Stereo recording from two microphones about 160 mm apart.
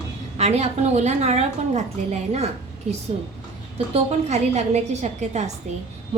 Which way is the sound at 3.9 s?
45° right (ahead or behind).